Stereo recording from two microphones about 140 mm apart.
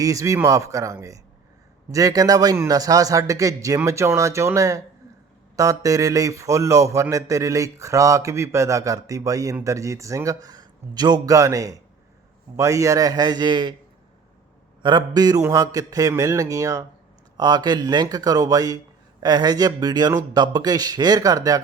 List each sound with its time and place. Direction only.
0.0 s speech: 25° right (ahead or behind)
14.8 s speech: 30° right (ahead or behind)